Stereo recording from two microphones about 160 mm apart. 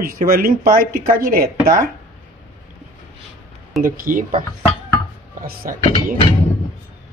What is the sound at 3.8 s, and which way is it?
Speech, 60° right (ahead or behind).